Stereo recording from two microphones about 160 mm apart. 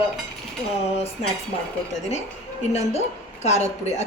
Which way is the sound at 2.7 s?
45° left (ahead or behind).